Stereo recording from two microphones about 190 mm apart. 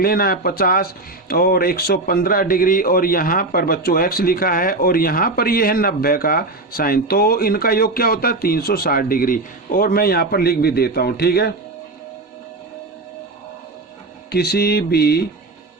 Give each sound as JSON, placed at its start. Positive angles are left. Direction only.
{"t": 0.0, "sound": "a man's voice", "side_deg": 50}
{"t": 14.3, "sound": "mantra", "side_deg": 55}